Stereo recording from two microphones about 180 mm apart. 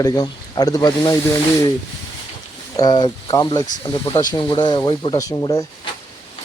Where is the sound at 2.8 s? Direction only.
25° left (ahead or behind).